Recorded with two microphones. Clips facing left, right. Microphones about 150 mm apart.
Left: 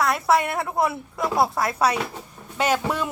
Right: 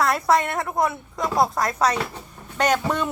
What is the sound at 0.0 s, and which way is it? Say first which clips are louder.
A woman's voice: right 1 dB; centre (ahead or behind).